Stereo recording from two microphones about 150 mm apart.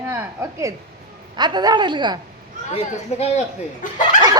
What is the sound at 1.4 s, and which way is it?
Speech, 30° right (ahead or behind).